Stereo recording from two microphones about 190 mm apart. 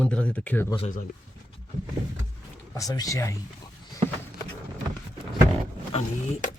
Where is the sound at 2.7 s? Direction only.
20° left (ahead or behind).